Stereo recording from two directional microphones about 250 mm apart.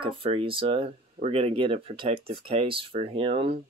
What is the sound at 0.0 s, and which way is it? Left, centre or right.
Speech, right.